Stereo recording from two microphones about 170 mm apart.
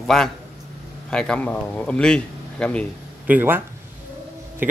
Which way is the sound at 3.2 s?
10° right (ahead or behind).